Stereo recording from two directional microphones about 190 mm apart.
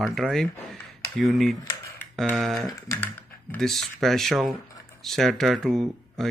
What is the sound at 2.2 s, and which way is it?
Speech, centre (ahead or behind).